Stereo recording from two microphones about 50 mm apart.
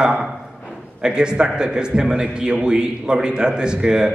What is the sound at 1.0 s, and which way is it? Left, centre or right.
A man's voice, centre.